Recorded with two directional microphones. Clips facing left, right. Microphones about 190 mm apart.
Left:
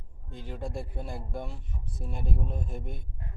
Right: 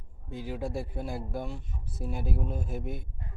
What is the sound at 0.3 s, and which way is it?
Speech, 5° right (ahead or behind).